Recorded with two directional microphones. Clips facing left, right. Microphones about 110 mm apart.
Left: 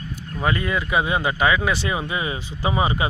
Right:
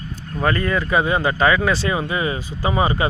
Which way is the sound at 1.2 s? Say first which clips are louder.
Right 3 dB; 15° left (ahead or behind).